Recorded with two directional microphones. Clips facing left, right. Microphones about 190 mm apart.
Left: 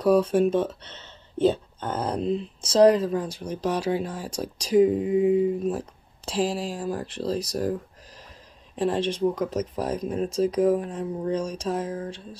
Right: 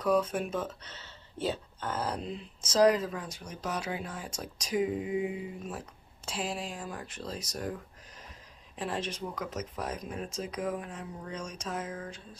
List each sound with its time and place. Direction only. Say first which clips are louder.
0.0 s speech: left 9 dB; 30° left (ahead or behind)
8.7 s speech: left 10 dB; 30° left (ahead or behind)